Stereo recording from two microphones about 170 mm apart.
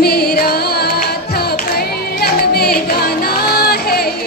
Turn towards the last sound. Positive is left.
turn(degrees=65)  # may be behind; listen again after turning